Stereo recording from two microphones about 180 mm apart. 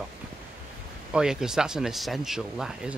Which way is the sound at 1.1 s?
5° right (ahead or behind).